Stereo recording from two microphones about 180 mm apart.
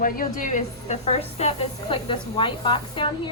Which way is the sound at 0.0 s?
50° left (ahead or behind).